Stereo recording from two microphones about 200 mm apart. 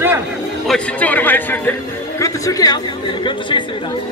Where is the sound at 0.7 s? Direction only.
5° left (ahead or behind).